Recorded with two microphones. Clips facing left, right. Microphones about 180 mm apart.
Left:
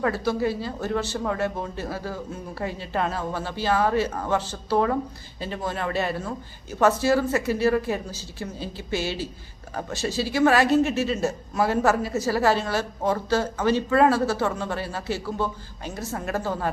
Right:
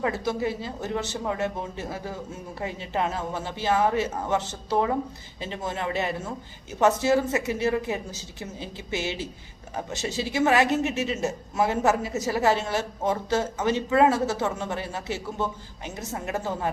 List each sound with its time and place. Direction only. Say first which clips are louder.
0.0 s speech: left 3 dB; 20° right (ahead or behind)